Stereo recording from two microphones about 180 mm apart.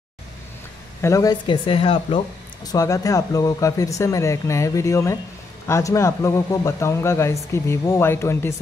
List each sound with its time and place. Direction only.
1.0 s speech: 20° left (ahead or behind)